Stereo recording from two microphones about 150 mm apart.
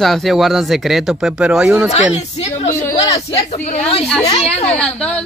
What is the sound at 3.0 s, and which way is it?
Speech, 20° left (ahead or behind).